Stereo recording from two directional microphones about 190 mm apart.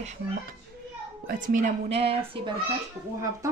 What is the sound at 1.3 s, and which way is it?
A woman's voice, 45° right (ahead or behind).